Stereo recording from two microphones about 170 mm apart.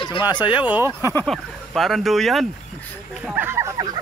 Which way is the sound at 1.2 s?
Centre (ahead or behind).